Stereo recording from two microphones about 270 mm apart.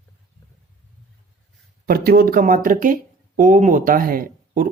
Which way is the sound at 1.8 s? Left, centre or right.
Right.